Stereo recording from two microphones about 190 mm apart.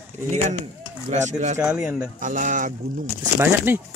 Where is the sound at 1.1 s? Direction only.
40° right (ahead or behind).